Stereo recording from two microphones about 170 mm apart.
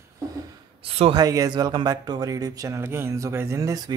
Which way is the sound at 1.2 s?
20° right (ahead or behind).